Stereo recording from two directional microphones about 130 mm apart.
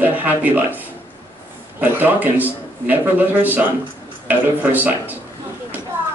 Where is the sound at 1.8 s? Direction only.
15° right (ahead or behind).